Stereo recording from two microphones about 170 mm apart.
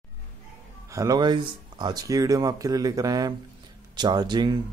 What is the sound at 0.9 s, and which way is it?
Speech, 20° right (ahead or behind).